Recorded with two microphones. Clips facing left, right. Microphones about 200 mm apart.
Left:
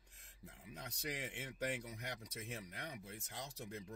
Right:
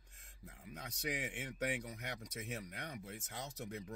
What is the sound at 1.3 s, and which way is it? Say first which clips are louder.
Speech: right 2 dB; centre (ahead or behind).